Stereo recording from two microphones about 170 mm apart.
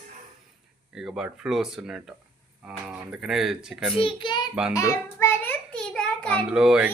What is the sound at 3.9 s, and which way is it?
Speech, 30° left (ahead or behind).